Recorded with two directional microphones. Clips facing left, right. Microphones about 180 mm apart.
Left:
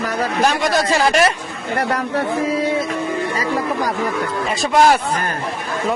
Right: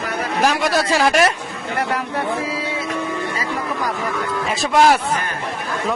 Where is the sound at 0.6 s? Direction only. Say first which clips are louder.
Left 1 dB; 5° right (ahead or behind).